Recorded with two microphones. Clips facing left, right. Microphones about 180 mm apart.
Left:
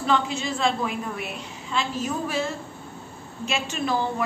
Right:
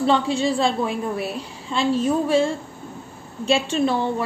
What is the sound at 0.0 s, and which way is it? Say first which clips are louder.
A woman's voice: right 5 dB; 30° right (ahead or behind).